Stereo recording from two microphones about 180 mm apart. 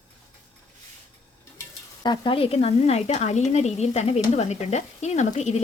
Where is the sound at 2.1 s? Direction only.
30° left (ahead or behind).